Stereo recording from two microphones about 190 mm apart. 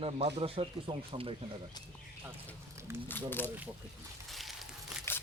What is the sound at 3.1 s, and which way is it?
Speech, 10° left (ahead or behind).